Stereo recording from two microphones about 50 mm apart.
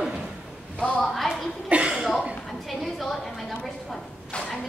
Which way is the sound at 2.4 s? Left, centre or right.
Centre.